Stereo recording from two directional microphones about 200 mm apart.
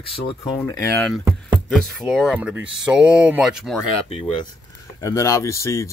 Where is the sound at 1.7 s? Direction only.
Centre (ahead or behind).